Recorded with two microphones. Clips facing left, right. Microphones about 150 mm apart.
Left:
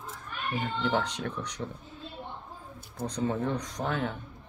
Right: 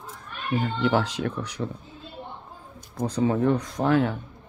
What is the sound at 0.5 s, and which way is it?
Speech, centre (ahead or behind).